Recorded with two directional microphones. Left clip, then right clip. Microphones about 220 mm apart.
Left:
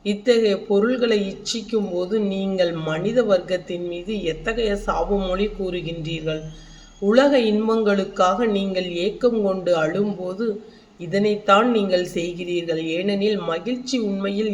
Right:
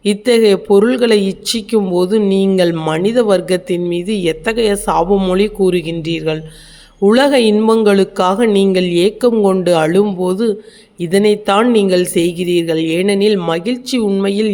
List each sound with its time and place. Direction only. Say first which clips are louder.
0.0 s speech: right 7 dB; 50° right (ahead or behind)